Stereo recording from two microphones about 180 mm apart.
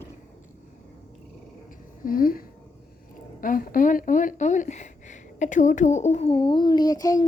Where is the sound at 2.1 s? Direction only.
55° left (ahead or behind).